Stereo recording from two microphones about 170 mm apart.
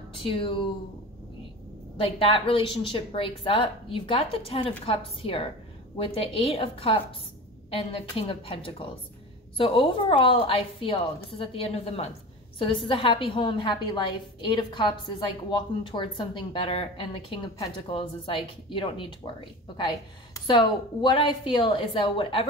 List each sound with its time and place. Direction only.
0.1 s a woman's voice: 30° left (ahead or behind)
2.0 s a woman's voice: 35° left (ahead or behind)
20.3 s a woman's voice: 25° left (ahead or behind)